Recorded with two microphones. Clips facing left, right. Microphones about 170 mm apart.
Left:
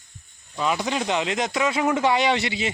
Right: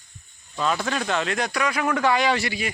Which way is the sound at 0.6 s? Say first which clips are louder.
Left 1 dB; 15° left (ahead or behind).